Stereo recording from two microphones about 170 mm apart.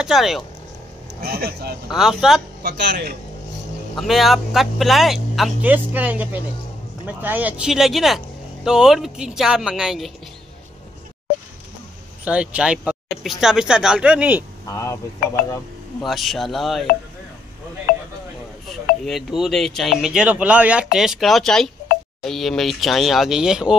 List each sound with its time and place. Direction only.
0.0 s speech: centre (ahead or behind)
1.2 s speech: 65° right (ahead or behind)
1.9 s speech: 5° right (ahead or behind)
2.6 s speech: 75° right (ahead or behind)
3.9 s speech: centre (ahead or behind)
12.3 s speech: 5° right (ahead or behind)
14.7 s speech: 20° left (ahead or behind)
16.0 s speech: centre (ahead or behind)
17.9 s a sound: 60° left (ahead or behind)
19.0 s speech: centre (ahead or behind)